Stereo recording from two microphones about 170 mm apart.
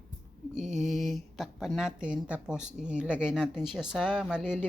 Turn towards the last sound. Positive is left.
turn(degrees=-5)  # may be behind; listen again after turning